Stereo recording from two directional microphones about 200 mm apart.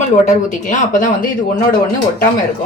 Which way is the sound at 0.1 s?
35° left (ahead or behind).